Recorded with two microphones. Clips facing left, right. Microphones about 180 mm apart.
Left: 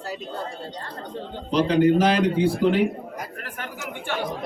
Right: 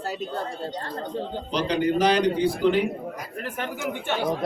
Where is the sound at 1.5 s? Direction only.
5° left (ahead or behind).